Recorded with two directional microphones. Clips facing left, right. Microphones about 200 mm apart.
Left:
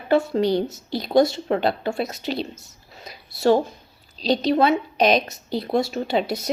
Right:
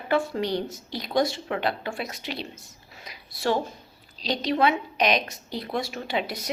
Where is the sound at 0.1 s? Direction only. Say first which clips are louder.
Left 6 dB; 25° left (ahead or behind).